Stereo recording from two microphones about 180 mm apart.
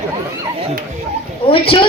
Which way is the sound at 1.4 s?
30° left (ahead or behind).